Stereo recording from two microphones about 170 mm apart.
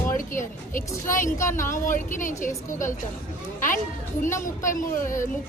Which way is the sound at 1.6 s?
50° left (ahead or behind).